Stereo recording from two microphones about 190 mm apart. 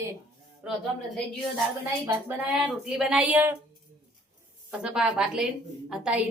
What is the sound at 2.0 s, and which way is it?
A woman's voice, 10° right (ahead or behind).